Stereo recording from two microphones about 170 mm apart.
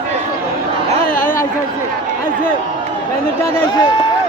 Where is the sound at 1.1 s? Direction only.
55° left (ahead or behind).